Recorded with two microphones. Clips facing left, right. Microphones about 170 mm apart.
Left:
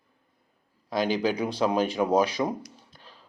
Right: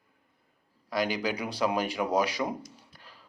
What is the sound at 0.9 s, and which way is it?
A man's voice, 25° left (ahead or behind).